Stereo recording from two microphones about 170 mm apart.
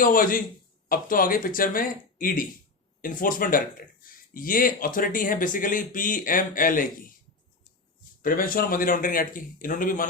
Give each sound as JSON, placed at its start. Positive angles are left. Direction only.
{"t": 0.0, "sound": "speech", "side_deg": 55}
{"t": 8.2, "sound": "speech", "side_deg": 55}